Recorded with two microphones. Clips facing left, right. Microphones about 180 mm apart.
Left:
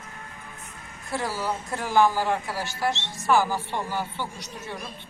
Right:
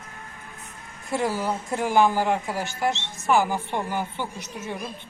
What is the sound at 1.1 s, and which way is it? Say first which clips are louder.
Speech: right 3 dB; 20° right (ahead or behind).